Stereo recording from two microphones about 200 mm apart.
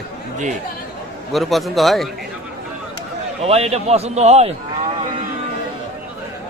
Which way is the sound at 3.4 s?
30° right (ahead or behind).